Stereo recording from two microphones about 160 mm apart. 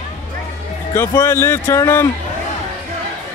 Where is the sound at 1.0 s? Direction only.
15° left (ahead or behind).